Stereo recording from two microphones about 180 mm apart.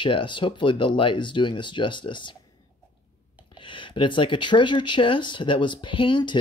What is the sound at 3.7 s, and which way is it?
Speech, 25° left (ahead or behind).